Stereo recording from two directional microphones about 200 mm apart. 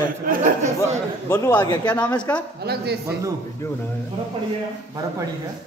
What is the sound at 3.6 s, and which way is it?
Speech, 15° left (ahead or behind).